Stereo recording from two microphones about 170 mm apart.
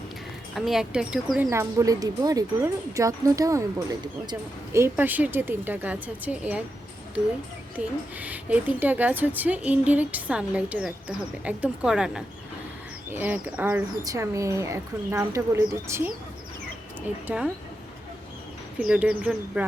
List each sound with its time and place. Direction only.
0.5 s speech: centre (ahead or behind)
7.8 s a woman's voice: 5° right (ahead or behind)
17.2 s a woman's voice: 5° right (ahead or behind)
18.8 s speech: 5° right (ahead or behind)